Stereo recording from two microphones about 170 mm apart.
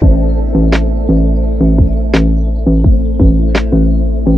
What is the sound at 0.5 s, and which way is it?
Music, centre (ahead or behind).